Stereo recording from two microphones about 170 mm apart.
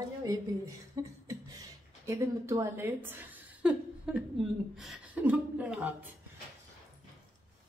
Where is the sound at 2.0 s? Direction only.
15° right (ahead or behind).